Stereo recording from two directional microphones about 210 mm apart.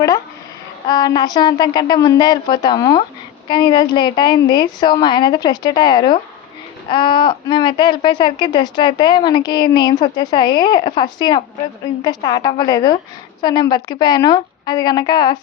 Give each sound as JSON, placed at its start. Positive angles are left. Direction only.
{"t": 0.9, "sound": "a woman's voice", "side_deg": 20}